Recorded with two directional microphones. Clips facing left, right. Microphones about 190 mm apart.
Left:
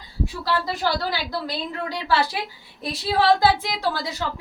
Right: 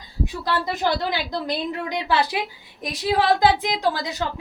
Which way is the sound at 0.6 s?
20° right (ahead or behind).